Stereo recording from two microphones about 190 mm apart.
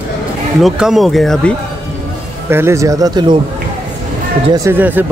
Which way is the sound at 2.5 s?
15° right (ahead or behind).